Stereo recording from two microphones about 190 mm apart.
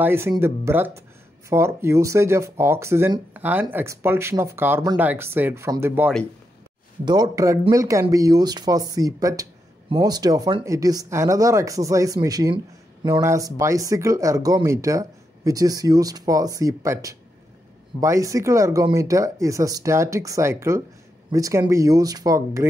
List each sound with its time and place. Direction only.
0.0 s a man's voice: 15° right (ahead or behind)